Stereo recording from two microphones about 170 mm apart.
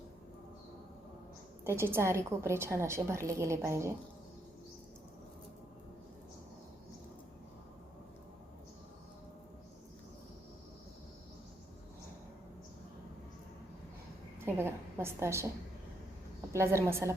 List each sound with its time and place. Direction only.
1.6 s a woman's voice: 15° right (ahead or behind)
14.4 s a woman's voice: 15° right (ahead or behind)
16.5 s a woman's voice: 15° right (ahead or behind)